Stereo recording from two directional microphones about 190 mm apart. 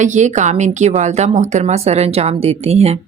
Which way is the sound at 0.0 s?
40° right (ahead or behind).